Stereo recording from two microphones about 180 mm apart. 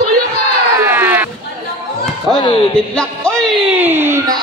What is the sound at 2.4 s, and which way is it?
Speech, 25° left (ahead or behind).